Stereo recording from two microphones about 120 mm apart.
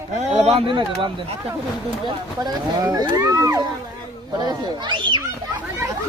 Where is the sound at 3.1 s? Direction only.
30° right (ahead or behind).